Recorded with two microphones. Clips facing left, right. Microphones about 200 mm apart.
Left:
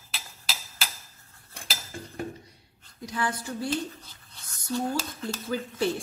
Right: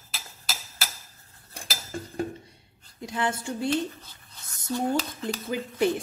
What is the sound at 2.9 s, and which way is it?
Speech, 25° right (ahead or behind).